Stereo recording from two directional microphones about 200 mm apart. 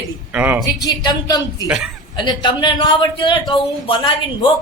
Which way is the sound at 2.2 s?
25° left (ahead or behind).